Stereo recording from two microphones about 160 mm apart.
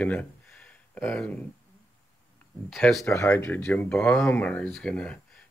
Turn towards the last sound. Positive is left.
turn(degrees=5)  # may be behind; listen again after turning